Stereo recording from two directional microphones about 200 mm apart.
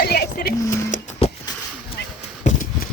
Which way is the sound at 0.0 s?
50° left (ahead or behind).